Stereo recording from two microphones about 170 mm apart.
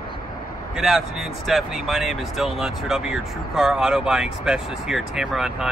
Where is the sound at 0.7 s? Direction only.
Centre (ahead or behind).